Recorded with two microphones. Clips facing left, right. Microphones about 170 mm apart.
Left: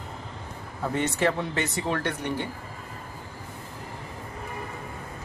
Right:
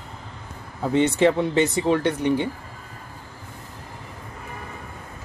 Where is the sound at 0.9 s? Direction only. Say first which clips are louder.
Right 7 dB; 25° right (ahead or behind).